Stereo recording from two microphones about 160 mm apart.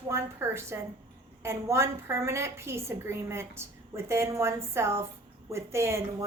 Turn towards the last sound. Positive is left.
turn(degrees=-15)  # may be behind; listen again after turning